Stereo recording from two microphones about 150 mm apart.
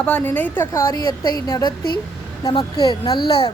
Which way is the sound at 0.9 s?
25° left (ahead or behind).